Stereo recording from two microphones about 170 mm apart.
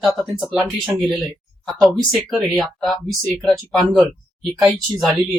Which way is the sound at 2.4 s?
Centre (ahead or behind).